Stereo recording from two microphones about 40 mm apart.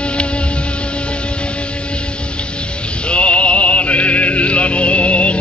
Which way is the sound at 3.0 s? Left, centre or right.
Left.